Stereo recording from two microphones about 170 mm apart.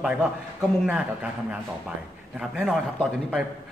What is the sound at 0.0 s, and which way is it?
A man's voice, 5° right (ahead or behind).